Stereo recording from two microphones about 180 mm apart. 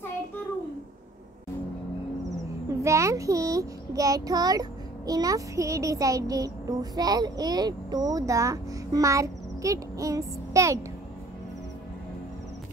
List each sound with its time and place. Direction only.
2.8 s a child's voice: 15° right (ahead or behind)